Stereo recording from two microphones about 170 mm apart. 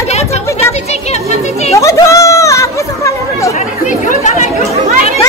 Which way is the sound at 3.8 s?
45° left (ahead or behind).